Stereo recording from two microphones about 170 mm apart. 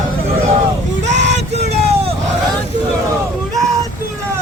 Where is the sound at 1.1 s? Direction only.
45° right (ahead or behind).